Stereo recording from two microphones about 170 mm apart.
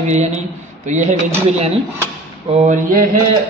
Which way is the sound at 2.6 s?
50° right (ahead or behind).